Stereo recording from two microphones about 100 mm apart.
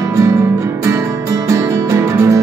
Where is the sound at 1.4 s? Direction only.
30° right (ahead or behind).